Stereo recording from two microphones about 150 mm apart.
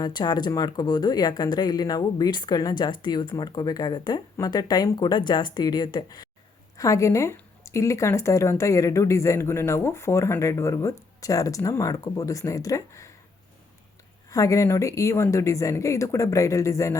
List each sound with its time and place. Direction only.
0.0 s a woman's voice: 30° left (ahead or behind)
14.3 s a woman's voice: 20° left (ahead or behind)